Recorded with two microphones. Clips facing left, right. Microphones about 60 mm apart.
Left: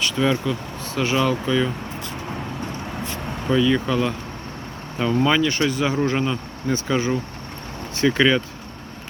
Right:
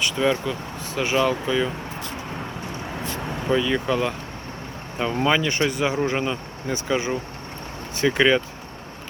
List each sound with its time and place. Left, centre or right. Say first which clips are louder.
0.0 s speech: left 1 dB; centre
3.5 s speech: left 3 dB; centre
5.2 s speech: even; centre